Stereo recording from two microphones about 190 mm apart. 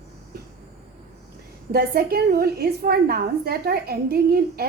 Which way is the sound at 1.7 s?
55° right (ahead or behind).